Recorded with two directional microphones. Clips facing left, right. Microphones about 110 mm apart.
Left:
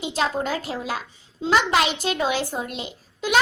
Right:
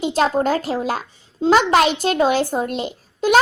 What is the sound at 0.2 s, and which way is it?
A child's voice, 45° right (ahead or behind).